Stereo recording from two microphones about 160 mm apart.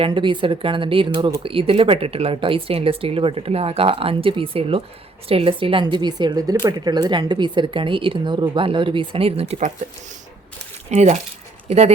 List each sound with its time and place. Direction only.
0.0 s speech: 30° right (ahead or behind)
10.8 s speech: 45° right (ahead or behind)